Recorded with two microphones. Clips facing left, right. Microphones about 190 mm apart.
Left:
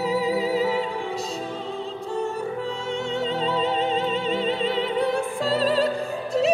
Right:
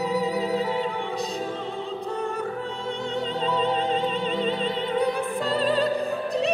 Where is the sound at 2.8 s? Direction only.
Centre (ahead or behind).